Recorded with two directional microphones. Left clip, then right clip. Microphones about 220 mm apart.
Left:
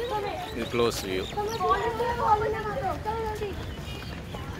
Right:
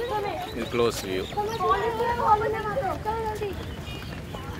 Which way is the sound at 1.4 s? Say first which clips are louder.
Right 1 dB; 35° right (ahead or behind).